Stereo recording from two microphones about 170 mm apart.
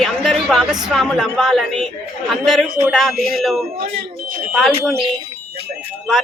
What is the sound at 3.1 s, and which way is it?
Speech, 60° right (ahead or behind).